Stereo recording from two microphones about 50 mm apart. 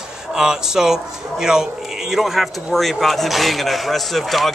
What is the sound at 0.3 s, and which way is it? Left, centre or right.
A man's voice, centre.